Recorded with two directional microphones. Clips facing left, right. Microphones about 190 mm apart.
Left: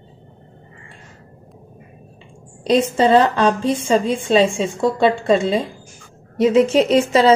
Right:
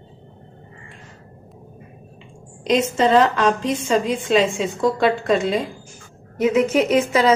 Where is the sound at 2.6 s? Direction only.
35° left (ahead or behind).